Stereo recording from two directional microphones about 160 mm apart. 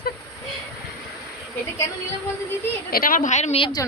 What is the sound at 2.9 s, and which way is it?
Speech, 65° left (ahead or behind).